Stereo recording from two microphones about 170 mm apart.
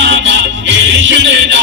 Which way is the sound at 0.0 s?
90° right.